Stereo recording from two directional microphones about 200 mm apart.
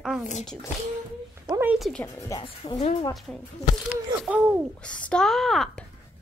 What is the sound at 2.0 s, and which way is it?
Speech, 15° left (ahead or behind).